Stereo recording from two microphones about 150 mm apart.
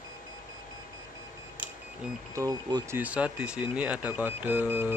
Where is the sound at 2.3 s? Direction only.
20° right (ahead or behind).